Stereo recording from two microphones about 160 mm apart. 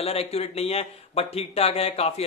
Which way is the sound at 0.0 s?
40° left (ahead or behind).